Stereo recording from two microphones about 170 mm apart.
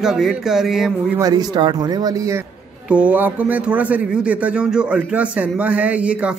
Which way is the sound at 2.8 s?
5° right (ahead or behind).